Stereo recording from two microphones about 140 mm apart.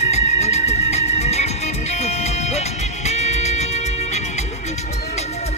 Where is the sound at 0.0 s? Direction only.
50° left (ahead or behind).